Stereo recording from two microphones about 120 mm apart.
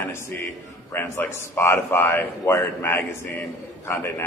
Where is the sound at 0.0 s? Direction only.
20° left (ahead or behind).